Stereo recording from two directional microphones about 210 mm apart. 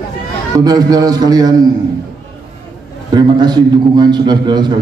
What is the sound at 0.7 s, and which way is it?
Speech, 20° right (ahead or behind).